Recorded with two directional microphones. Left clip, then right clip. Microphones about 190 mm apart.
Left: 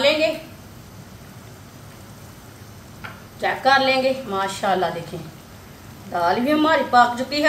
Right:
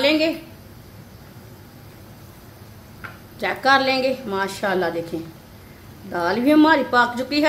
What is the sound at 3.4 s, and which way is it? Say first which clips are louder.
A woman's voice: even; 55° right (ahead or behind).